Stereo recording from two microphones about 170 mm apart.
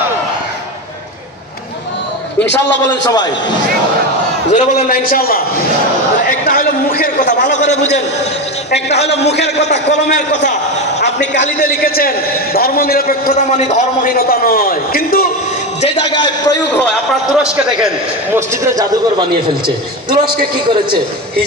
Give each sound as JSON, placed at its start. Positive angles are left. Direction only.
{"t": 2.9, "sound": "a man's voice", "side_deg": 25}
{"t": 4.5, "sound": "a man's voice", "side_deg": 45}
{"t": 4.9, "sound": "a man's voice", "side_deg": 60}
{"t": 13.3, "sound": "a man's voice", "side_deg": 45}
{"t": 14.1, "sound": "a man's voice", "side_deg": 60}
{"t": 15.8, "sound": "a man's voice", "side_deg": 30}
{"t": 16.7, "sound": "a man's voice", "side_deg": 0}
{"t": 18.3, "sound": "a man's voice", "side_deg": -20}